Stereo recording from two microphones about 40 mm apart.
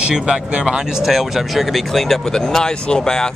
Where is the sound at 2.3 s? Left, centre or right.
Centre.